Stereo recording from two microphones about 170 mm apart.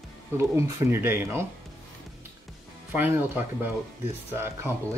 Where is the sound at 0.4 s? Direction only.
15° right (ahead or behind).